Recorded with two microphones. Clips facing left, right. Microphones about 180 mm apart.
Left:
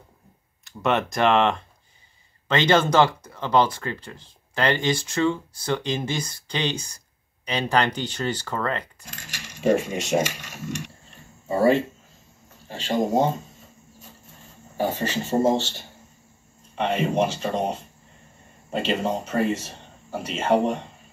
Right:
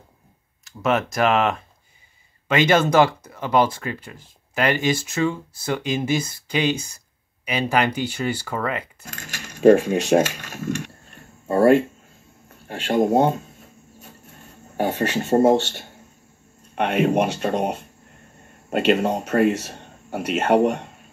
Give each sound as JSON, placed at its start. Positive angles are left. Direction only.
{"t": 0.7, "sound": "speech", "side_deg": 0}
{"t": 10.1, "sound": "speech", "side_deg": -90}
{"t": 11.1, "sound": "a sound", "side_deg": -60}
{"t": 16.7, "sound": "a man's voice", "side_deg": -65}